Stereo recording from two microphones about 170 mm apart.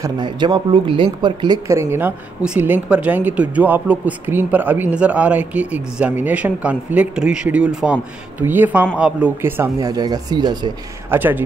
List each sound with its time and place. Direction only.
0.0 s speech: 25° right (ahead or behind)
1.7 s a woman's voice: 15° right (ahead or behind)
11.1 s a woman's voice: 10° right (ahead or behind)